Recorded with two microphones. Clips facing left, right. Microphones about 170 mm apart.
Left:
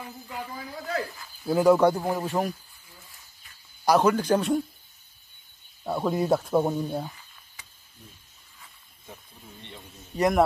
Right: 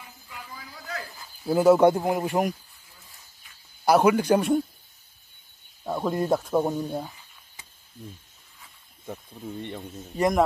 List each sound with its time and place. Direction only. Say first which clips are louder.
1.4 s speech: right 1 dB; centre (ahead or behind)
1.8 s a man's voice: right 3 dB; 20° right (ahead or behind)
3.8 s a man's voice: right 2 dB; 10° right (ahead or behind)
5.9 s speech: even; 5° left (ahead or behind)
9.0 s speech: right 10 dB; 55° right (ahead or behind)
10.1 s speech: even; centre (ahead or behind)